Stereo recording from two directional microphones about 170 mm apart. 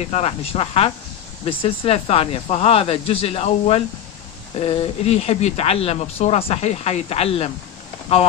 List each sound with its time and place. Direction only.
0.0 s speech: 40° left (ahead or behind)